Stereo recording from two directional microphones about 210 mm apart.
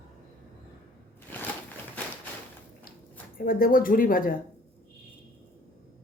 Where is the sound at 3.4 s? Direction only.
45° left (ahead or behind).